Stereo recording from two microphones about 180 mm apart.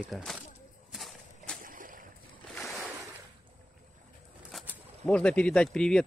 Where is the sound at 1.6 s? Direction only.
50° right (ahead or behind).